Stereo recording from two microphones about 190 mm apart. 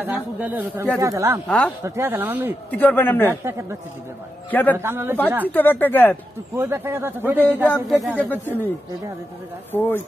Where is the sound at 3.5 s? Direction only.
15° right (ahead or behind).